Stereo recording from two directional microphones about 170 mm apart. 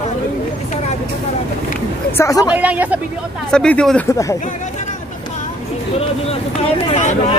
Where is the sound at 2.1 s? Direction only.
20° left (ahead or behind).